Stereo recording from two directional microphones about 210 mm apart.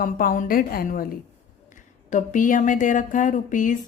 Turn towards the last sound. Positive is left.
turn(degrees=35)  # may be behind; listen again after turning